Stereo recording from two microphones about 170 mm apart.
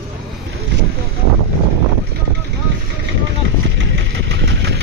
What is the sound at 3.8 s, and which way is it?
Engine, 90° right.